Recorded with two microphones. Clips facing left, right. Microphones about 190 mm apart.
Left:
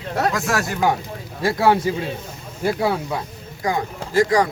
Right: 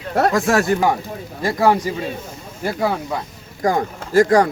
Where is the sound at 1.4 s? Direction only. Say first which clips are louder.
Even; centre (ahead or behind).